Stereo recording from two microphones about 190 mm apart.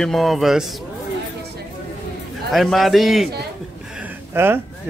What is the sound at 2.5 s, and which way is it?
Speech, centre (ahead or behind).